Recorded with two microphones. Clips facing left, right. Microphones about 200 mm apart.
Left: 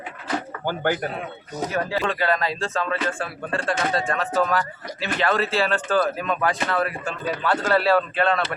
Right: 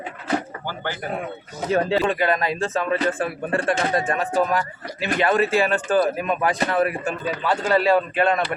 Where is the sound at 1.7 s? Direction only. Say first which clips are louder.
Right 6 dB; 25° right (ahead or behind).